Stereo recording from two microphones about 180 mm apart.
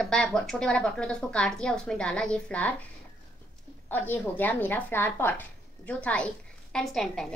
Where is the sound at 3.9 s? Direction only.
10° left (ahead or behind).